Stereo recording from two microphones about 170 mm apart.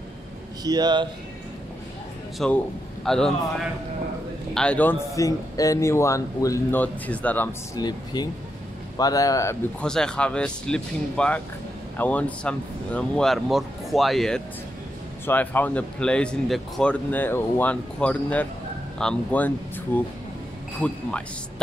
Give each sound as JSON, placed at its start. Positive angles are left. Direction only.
{"t": 0.7, "sound": "speech", "side_deg": -25}
{"t": 2.3, "sound": "speech", "side_deg": 5}
{"t": 4.6, "sound": "speech", "side_deg": 10}
{"t": 7.7, "sound": "speech", "side_deg": 25}
{"t": 9.8, "sound": "speech", "side_deg": 5}